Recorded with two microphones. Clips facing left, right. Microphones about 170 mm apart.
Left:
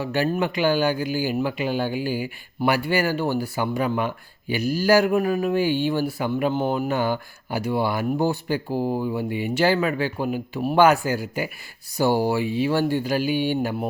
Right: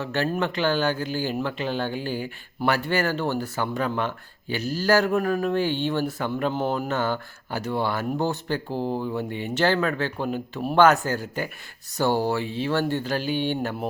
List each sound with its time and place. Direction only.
0.0 s speech: 10° left (ahead or behind)